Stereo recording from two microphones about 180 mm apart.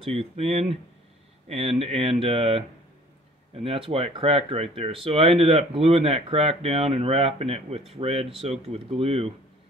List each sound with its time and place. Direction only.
0.0 s speech: 35° right (ahead or behind)